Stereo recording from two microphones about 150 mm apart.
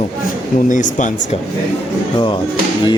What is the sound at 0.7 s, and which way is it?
Speech, 60° left (ahead or behind).